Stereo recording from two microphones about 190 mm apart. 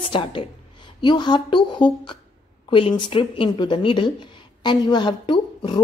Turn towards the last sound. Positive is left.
turn(degrees=25)  # may be behind; listen again after turning